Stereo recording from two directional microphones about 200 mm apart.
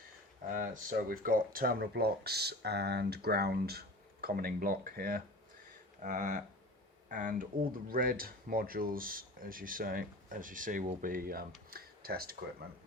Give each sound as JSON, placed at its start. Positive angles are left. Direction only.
{"t": 0.5, "sound": "speech", "side_deg": -40}